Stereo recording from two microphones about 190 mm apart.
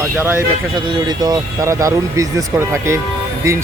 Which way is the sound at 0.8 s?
20° right (ahead or behind).